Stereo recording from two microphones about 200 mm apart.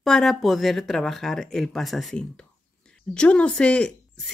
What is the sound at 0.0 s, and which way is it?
A woman's voice, centre (ahead or behind).